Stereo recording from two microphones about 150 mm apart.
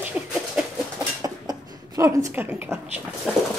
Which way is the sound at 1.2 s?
25° right (ahead or behind).